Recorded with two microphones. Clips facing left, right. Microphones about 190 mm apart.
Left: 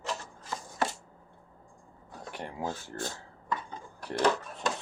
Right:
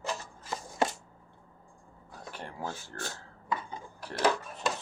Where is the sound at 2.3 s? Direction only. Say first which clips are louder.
Left 3 dB; 15° left (ahead or behind).